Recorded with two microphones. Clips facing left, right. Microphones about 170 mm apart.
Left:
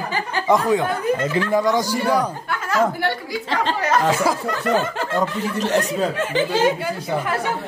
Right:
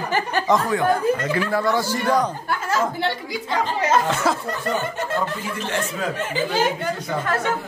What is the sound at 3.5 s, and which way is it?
A woman's voice, 90° left.